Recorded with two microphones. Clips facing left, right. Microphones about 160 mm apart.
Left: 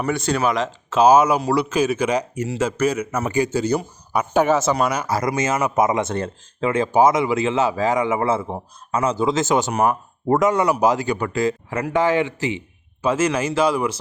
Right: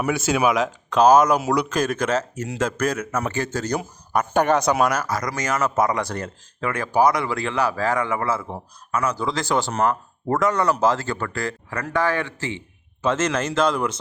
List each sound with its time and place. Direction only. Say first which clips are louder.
0.0 s a man's voice: even; 5° right (ahead or behind)
5.0 s speech: left 4 dB; 25° left (ahead or behind); by 13.9 s 5° left (ahead or behind)